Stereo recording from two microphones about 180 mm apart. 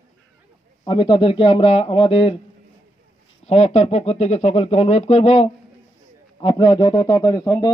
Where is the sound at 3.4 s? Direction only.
35° left (ahead or behind); by 7.7 s 20° left (ahead or behind).